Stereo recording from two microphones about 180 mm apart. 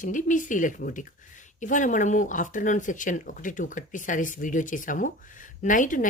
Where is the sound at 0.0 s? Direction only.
45° left (ahead or behind).